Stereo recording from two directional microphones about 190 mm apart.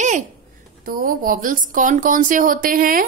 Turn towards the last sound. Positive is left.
turn(degrees=-45)  # may be behind; listen again after turning